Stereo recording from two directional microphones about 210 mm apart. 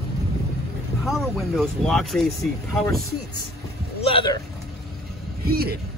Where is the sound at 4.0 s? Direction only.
25° left (ahead or behind).